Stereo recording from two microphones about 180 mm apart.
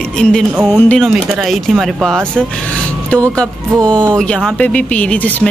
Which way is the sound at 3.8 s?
5° left (ahead or behind).